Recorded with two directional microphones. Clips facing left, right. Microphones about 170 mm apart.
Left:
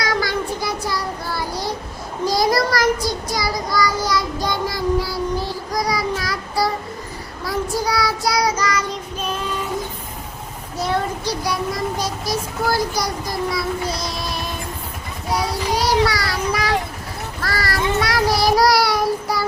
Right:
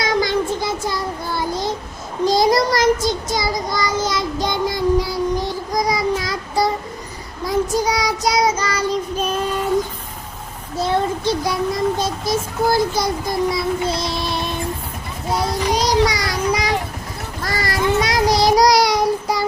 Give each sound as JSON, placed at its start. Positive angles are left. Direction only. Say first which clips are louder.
{"t": 0.0, "sound": "child singing", "louder": "right 3 dB", "side_deg": -20}
{"t": 7.4, "sound": "a child's voice", "louder": "right 4 dB", "side_deg": -20}
{"t": 10.8, "sound": "a child's voice", "louder": "right 3 dB", "side_deg": -25}
{"t": 15.7, "sound": "a child's voice", "louder": "even", "side_deg": -20}
{"t": 17.4, "sound": "child singing", "louder": "right 2 dB", "side_deg": -20}